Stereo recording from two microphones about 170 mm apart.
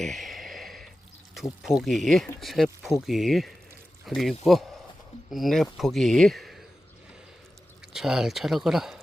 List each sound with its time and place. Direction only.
0.0 s a sound: centre (ahead or behind)
1.3 s speech: centre (ahead or behind)
7.9 s speech: 5° right (ahead or behind)